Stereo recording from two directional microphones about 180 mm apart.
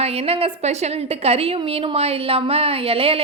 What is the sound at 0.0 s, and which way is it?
A woman's voice, 35° right (ahead or behind).